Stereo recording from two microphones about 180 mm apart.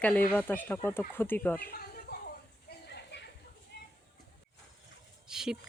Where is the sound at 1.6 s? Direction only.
55° left (ahead or behind).